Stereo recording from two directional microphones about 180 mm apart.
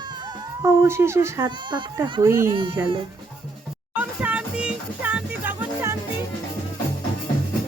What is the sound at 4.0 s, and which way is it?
Music, 5° right (ahead or behind).